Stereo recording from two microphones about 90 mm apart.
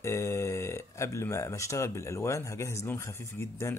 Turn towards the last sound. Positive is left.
turn(degrees=30)  # may be behind; listen again after turning